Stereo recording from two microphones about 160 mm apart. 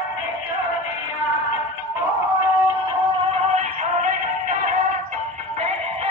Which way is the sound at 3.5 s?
50° right (ahead or behind).